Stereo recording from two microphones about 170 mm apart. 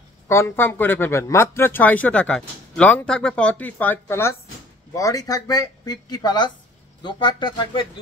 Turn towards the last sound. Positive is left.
turn(degrees=30)  # may be behind; listen again after turning